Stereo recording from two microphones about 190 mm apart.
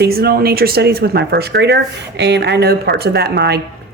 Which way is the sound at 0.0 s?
55° right (ahead or behind).